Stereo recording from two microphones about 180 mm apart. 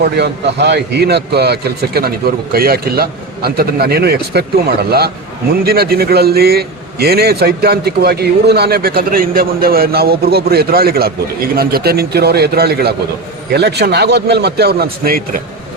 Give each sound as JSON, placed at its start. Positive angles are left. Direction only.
{"t": 0.0, "sound": "a man's voice", "side_deg": -70}